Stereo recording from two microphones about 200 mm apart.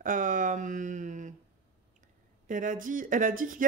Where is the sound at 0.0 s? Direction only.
40° right (ahead or behind).